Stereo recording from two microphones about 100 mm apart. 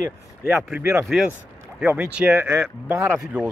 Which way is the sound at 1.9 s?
10° right (ahead or behind).